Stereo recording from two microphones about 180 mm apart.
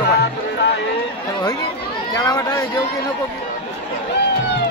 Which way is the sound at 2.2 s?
20° left (ahead or behind).